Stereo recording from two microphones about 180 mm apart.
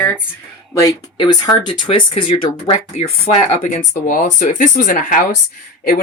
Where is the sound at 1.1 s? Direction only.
25° left (ahead or behind).